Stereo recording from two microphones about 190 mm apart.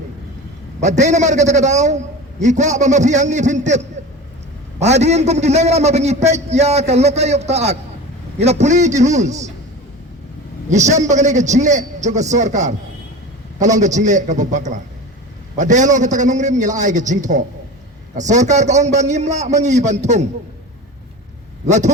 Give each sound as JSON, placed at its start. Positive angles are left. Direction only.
{"t": 0.8, "sound": "a man's voice", "side_deg": -40}
{"t": 10.7, "sound": "a man's voice", "side_deg": -40}
{"t": 21.7, "sound": "a man's voice", "side_deg": -35}